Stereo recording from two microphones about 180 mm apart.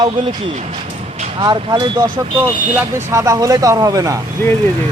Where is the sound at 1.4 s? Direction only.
20° right (ahead or behind).